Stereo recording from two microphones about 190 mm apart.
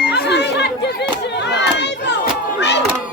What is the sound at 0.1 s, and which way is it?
Chatter, 60° left (ahead or behind).